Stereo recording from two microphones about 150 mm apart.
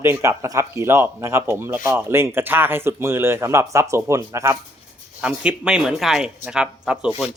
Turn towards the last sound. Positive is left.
turn(degrees=-5)  # may be behind; listen again after turning